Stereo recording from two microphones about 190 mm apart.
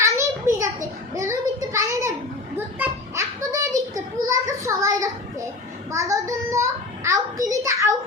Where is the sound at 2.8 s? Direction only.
15° right (ahead or behind).